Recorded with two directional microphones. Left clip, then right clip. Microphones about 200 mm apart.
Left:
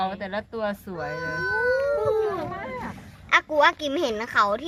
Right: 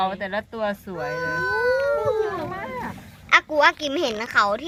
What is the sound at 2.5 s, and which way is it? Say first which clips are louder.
Vehicle: right 2 dB; 45° right (ahead or behind).